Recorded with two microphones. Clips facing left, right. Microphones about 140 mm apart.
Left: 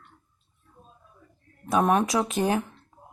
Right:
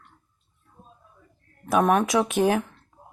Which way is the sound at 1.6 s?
Centre (ahead or behind).